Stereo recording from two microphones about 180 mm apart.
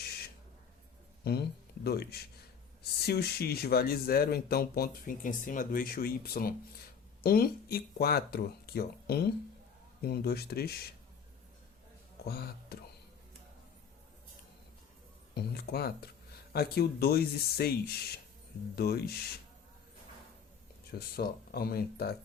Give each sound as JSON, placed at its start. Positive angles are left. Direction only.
{"t": 1.2, "sound": "speech", "side_deg": 65}
{"t": 12.2, "sound": "speech", "side_deg": 60}
{"t": 15.4, "sound": "speech", "side_deg": 60}
{"t": 20.9, "sound": "speech", "side_deg": 60}